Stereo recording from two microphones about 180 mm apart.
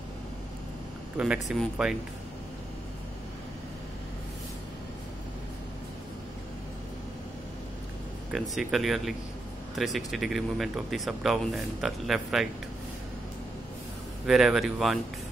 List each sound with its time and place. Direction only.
1.1 s speech: 5° right (ahead or behind)
8.3 s speech: centre (ahead or behind)
14.2 s speech: centre (ahead or behind)